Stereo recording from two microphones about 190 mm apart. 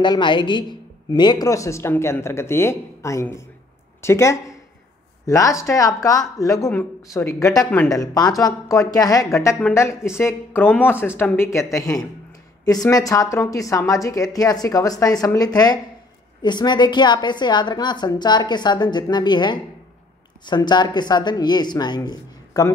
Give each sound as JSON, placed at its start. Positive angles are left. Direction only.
{"t": 0.0, "sound": "a woman's voice", "side_deg": 25}